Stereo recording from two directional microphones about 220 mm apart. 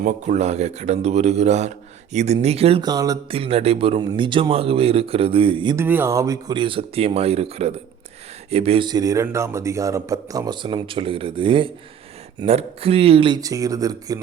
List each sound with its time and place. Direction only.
0.0 s speech: 30° right (ahead or behind)
5.7 s speech: 10° right (ahead or behind)